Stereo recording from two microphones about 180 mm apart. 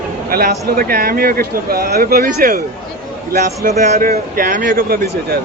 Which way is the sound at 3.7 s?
45° right (ahead or behind).